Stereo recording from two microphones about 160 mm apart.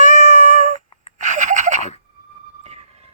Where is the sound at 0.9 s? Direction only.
40° left (ahead or behind).